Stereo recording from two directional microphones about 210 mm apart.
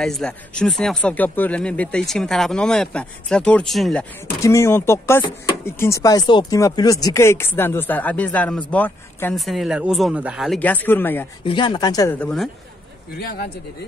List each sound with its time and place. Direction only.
0.0 s speech: 5° left (ahead or behind)
4.4 s speech: 15° left (ahead or behind)
11.4 s speech: 25° left (ahead or behind)
12.2 s speech: centre (ahead or behind)
13.2 s speech: 45° left (ahead or behind)